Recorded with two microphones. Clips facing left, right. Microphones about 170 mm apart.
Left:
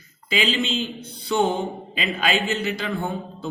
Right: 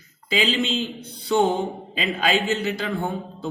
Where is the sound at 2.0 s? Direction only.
40° right (ahead or behind).